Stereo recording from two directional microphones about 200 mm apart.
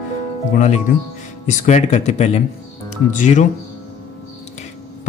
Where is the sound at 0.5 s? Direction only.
35° left (ahead or behind).